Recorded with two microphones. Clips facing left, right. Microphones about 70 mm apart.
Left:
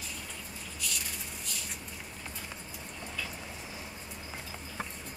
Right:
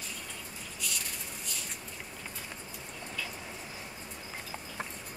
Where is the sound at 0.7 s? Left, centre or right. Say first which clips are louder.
Even; centre.